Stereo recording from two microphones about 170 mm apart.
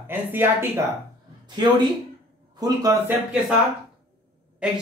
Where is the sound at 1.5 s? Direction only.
25° right (ahead or behind).